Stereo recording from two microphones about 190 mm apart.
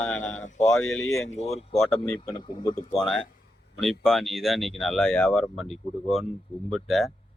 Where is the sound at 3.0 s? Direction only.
5° left (ahead or behind).